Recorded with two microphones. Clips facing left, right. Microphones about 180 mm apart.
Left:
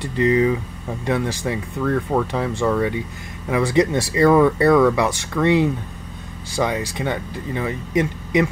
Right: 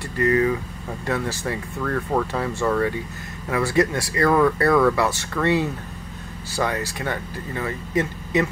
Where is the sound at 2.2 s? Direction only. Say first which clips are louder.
Left 2 dB; 15° left (ahead or behind).